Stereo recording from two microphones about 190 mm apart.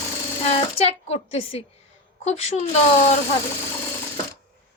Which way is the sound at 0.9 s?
35° left (ahead or behind).